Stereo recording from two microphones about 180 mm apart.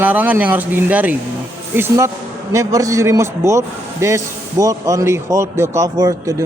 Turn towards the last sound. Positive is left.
turn(degrees=-20)  # may be behind; listen again after turning